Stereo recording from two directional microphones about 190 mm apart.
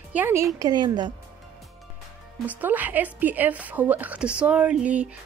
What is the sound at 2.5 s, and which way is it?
A woman's voice, 10° right (ahead or behind).